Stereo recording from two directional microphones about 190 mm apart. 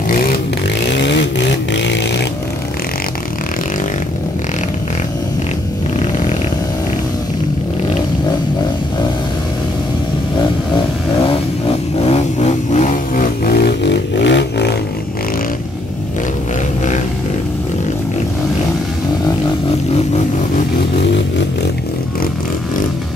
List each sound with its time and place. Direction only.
0.9 s vehicle: 70° left (ahead or behind)
1.7 s a sound: 70° left (ahead or behind)
11.6 s vehicle: 35° left (ahead or behind); by 14.8 s 65° left (ahead or behind)